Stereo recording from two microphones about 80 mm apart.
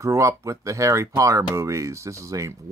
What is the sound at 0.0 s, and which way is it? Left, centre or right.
Speech, right.